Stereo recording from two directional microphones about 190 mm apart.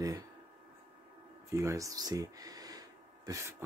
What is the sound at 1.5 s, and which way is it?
Speech, 15° right (ahead or behind).